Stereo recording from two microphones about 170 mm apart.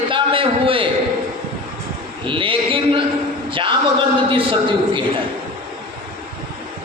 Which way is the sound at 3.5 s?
30° right (ahead or behind).